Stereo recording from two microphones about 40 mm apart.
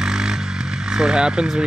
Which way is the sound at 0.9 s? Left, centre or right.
Right.